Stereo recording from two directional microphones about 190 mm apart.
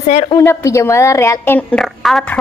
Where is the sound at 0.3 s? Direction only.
15° left (ahead or behind).